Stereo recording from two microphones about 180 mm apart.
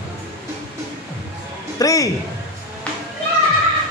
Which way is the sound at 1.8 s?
20° left (ahead or behind).